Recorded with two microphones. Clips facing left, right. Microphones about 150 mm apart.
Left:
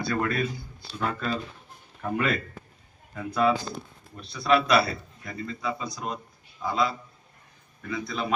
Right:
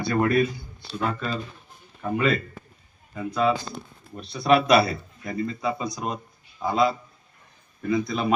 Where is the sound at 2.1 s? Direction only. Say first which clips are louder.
Right 4 dB; centre (ahead or behind).